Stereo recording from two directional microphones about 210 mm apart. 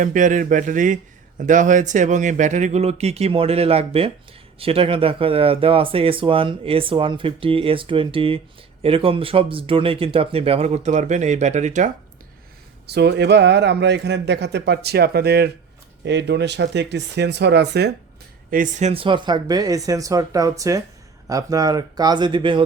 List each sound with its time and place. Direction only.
0.0 s speech: 40° right (ahead or behind)
12.9 s a man's voice: 55° right (ahead or behind)
18.5 s speech: 40° right (ahead or behind)